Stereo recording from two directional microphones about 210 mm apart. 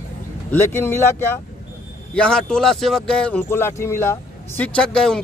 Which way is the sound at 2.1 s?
5° left (ahead or behind).